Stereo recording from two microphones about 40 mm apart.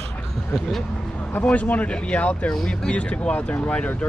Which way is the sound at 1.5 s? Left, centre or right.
Left.